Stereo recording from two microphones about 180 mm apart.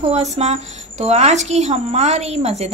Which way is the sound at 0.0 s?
40° right (ahead or behind).